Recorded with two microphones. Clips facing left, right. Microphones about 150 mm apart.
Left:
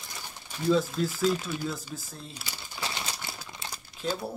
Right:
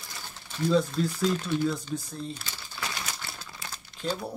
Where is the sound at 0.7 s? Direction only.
5° left (ahead or behind).